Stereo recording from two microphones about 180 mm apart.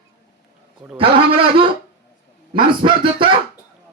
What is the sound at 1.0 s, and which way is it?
A man's voice, 30° right (ahead or behind).